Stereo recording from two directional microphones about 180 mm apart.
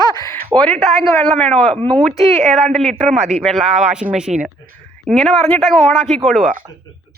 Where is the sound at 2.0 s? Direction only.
40° right (ahead or behind).